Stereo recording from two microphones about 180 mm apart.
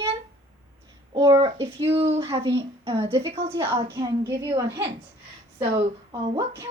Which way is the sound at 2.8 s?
15° right (ahead or behind).